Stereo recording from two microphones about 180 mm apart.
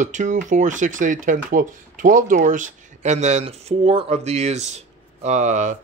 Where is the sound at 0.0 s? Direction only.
40° right (ahead or behind).